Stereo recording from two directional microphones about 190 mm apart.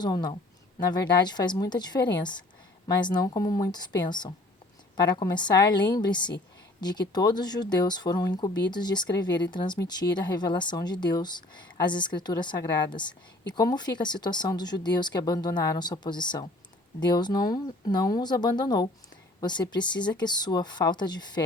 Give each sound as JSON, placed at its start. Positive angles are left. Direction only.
{"t": 0.0, "sound": "speech", "side_deg": 20}